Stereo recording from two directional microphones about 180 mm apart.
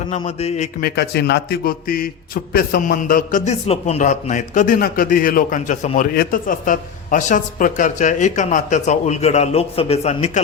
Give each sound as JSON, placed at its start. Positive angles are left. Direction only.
{"t": 0.1, "sound": "speech", "side_deg": 35}
{"t": 0.8, "sound": "a man's voice", "side_deg": 60}